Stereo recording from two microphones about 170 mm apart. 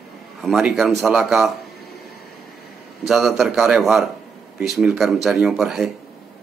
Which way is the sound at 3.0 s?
Centre (ahead or behind).